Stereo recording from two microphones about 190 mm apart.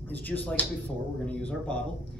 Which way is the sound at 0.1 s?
10° left (ahead or behind).